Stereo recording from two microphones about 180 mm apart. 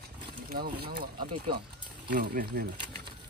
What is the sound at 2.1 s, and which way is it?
Speech, 55° right (ahead or behind).